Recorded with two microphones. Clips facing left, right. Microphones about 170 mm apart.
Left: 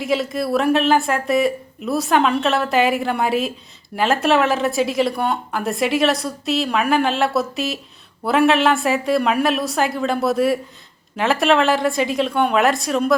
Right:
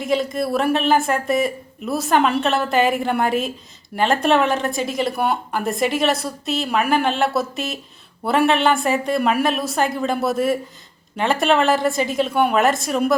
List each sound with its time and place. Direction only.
0.0 s speech: centre (ahead or behind)